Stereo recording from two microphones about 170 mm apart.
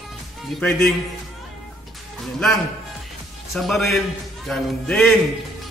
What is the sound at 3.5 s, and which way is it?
A man's voice, centre (ahead or behind).